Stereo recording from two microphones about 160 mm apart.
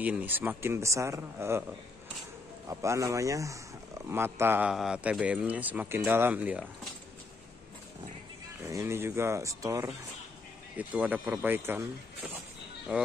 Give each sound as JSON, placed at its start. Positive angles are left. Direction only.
{"t": 0.0, "sound": "speech", "side_deg": -10}
{"t": 2.7, "sound": "speech", "side_deg": -20}
{"t": 8.6, "sound": "speech", "side_deg": -15}
{"t": 10.8, "sound": "speech", "side_deg": -10}
{"t": 12.9, "sound": "speech", "side_deg": -5}